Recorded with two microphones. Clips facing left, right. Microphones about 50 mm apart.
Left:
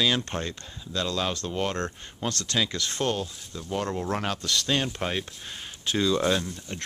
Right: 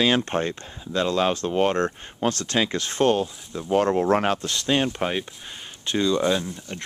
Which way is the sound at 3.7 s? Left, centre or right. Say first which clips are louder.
Right 9 dB; right.